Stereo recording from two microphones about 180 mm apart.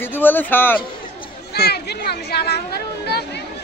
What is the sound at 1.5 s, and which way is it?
Speech, 65° left (ahead or behind).